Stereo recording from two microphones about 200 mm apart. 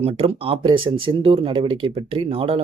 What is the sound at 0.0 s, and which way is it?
Speech, 30° right (ahead or behind).